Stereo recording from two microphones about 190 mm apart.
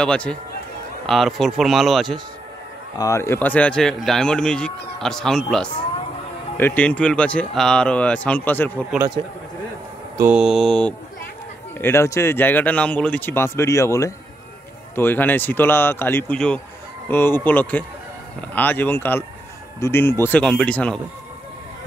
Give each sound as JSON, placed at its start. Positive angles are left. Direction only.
{"t": 0.0, "sound": "speech", "side_deg": 5}
{"t": 3.0, "sound": "speech", "side_deg": 15}
{"t": 8.9, "sound": "speech", "side_deg": -15}
{"t": 10.3, "sound": "speech", "side_deg": 0}